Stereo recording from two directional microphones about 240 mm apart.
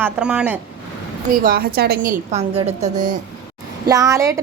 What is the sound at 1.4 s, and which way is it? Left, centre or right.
A woman's voice, right.